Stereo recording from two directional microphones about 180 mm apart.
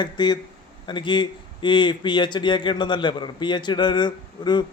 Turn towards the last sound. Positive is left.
turn(degrees=25)  # may be behind; listen again after turning